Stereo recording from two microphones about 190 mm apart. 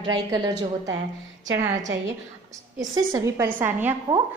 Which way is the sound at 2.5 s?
15° right (ahead or behind).